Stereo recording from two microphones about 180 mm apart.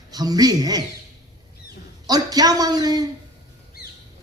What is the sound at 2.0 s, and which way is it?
A man's voice, 20° right (ahead or behind).